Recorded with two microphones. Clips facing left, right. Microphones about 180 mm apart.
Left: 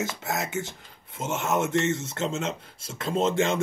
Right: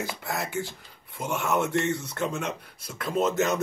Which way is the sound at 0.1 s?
20° left (ahead or behind).